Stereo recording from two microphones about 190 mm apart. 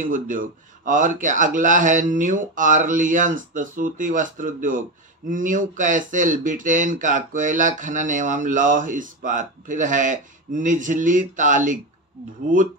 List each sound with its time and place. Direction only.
0.0 s speech: 45° right (ahead or behind)